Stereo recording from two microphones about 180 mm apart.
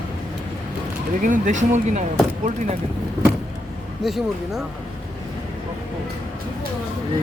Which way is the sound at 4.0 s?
Centre (ahead or behind).